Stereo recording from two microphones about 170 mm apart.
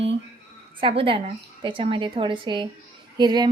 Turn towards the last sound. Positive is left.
turn(degrees=-25)  # may be behind; listen again after turning